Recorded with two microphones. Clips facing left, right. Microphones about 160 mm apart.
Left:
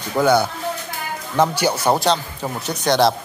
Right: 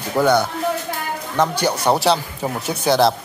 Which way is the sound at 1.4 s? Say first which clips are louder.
Left 1 dB; 5° left (ahead or behind).